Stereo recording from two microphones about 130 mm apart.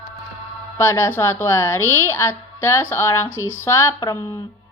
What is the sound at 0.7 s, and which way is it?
A woman's voice, 20° left (ahead or behind).